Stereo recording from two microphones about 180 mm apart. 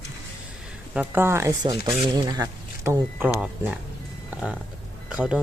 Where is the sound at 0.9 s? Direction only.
10° right (ahead or behind).